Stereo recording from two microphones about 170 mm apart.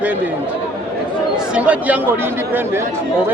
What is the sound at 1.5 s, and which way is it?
Speech, 5° right (ahead or behind).